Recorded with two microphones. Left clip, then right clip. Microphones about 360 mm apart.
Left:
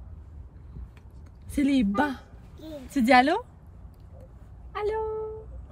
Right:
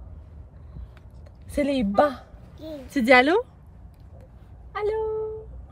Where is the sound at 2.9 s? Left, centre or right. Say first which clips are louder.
Right 3 dB; centre.